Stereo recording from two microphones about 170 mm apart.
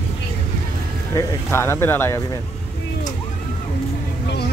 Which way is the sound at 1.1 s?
15° left (ahead or behind).